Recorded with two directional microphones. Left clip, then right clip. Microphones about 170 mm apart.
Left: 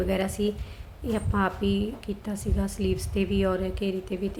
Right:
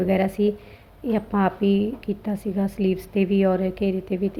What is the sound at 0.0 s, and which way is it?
A woman's voice, 20° right (ahead or behind).